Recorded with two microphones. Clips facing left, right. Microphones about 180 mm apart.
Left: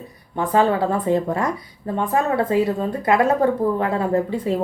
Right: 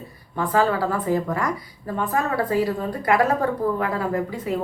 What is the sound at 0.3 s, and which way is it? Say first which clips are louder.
A woman's voice: left 3 dB; 20° left (ahead or behind).